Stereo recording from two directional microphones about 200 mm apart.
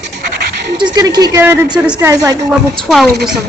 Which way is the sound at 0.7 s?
20° right (ahead or behind).